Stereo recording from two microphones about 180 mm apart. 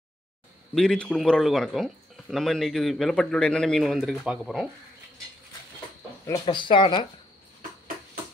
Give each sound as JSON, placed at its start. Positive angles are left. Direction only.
{"t": 0.7, "sound": "speech", "side_deg": 0}
{"t": 6.4, "sound": "speech", "side_deg": 25}